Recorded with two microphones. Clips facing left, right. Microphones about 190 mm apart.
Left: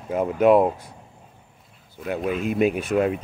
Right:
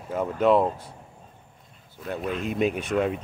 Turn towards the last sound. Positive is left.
turn(degrees=5)  # may be behind; listen again after turning